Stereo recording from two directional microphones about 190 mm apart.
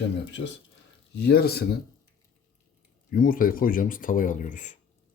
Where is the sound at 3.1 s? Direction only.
50° left (ahead or behind).